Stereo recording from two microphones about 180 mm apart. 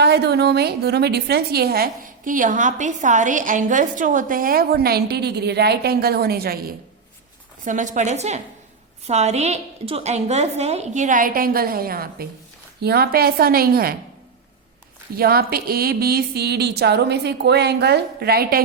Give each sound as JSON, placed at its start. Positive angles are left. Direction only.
{"t": 0.0, "sound": "a woman's voice", "side_deg": -65}
{"t": 7.6, "sound": "a woman's voice", "side_deg": -45}
{"t": 15.1, "sound": "a woman's voice", "side_deg": -55}